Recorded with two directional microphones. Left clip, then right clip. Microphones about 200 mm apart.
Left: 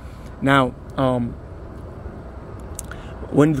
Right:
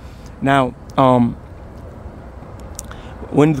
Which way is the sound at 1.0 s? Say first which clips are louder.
Right 8 dB; 25° right (ahead or behind).